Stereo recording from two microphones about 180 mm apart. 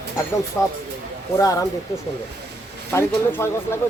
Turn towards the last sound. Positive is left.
turn(degrees=15)  # may be behind; listen again after turning